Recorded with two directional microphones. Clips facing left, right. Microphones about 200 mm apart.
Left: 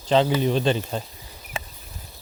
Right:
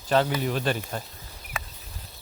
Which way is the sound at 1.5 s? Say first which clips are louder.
Left 3 dB; 30° left (ahead or behind).